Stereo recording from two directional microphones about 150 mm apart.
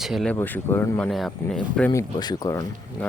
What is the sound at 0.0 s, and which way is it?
Speech, centre (ahead or behind).